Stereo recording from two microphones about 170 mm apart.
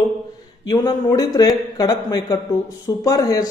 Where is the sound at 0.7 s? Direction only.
25° left (ahead or behind).